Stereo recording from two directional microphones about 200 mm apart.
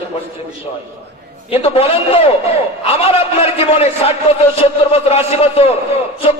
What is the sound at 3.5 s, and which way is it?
A man's voice, 30° left (ahead or behind).